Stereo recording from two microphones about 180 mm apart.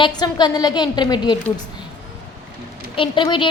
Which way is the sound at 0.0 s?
25° left (ahead or behind).